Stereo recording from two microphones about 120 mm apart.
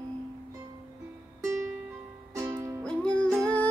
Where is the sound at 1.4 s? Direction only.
25° right (ahead or behind).